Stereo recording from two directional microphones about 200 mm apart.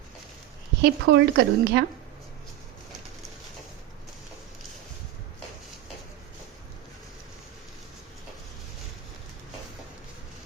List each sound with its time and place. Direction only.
0.8 s speech: 60° right (ahead or behind)